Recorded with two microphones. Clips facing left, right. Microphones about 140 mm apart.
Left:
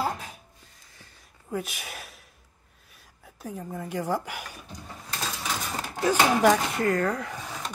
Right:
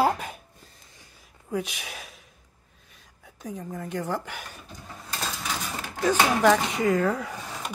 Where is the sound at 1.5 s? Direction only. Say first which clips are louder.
Right 2 dB; centre (ahead or behind).